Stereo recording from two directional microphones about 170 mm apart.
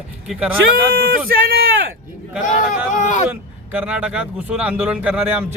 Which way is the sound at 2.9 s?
45° left (ahead or behind).